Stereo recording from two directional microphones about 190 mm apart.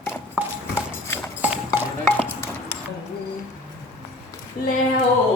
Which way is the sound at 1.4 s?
10° right (ahead or behind).